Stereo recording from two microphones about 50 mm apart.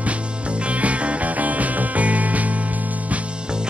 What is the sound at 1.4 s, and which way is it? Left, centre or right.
Music, right.